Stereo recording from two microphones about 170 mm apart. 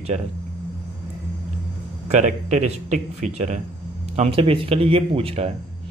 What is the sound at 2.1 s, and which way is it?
A man's voice, 45° right (ahead or behind).